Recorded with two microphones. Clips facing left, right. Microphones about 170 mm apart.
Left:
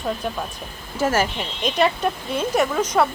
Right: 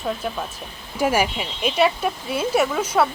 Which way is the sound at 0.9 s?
10° right (ahead or behind).